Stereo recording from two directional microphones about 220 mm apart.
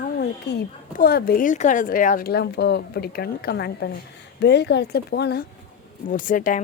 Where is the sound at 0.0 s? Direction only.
45° left (ahead or behind).